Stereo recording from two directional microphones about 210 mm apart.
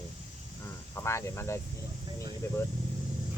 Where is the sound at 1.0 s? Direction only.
15° left (ahead or behind).